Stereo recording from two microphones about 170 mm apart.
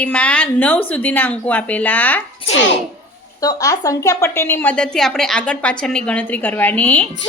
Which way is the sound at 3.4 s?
20° left (ahead or behind).